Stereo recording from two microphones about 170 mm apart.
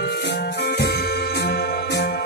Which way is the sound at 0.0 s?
75° left (ahead or behind).